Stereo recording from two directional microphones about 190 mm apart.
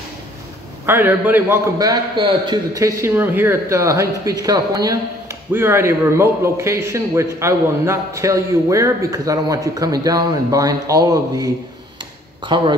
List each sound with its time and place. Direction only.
0.8 s a man's voice: 10° right (ahead or behind); by 12.7 s 25° right (ahead or behind)